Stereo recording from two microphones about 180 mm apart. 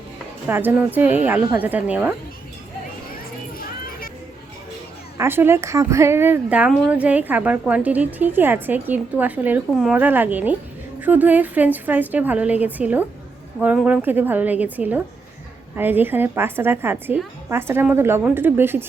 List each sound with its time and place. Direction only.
0.4 s speech: 10° right (ahead or behind)
3.6 s a sound: 55° left (ahead or behind)
5.1 s speech: 15° right (ahead or behind)